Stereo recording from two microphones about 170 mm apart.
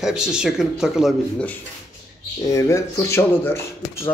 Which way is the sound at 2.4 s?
15° left (ahead or behind).